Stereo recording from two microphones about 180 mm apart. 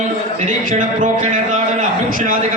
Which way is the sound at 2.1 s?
50° right (ahead or behind).